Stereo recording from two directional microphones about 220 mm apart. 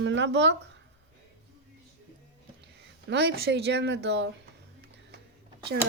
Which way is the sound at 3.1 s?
50° right (ahead or behind).